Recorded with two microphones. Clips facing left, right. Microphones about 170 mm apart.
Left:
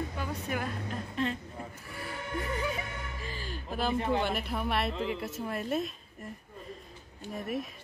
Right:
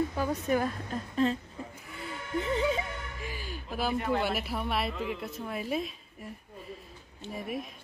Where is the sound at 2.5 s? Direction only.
25° right (ahead or behind).